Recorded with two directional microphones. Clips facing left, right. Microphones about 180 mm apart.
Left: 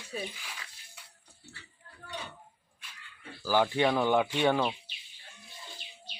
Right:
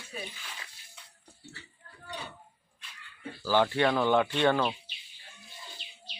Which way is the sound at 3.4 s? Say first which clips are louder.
Right 1 dB; 10° left (ahead or behind).